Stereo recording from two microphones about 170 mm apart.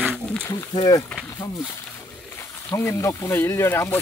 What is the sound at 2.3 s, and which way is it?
Speech, 15° left (ahead or behind).